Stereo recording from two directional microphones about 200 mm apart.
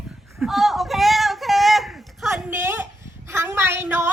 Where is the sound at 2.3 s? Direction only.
10° right (ahead or behind).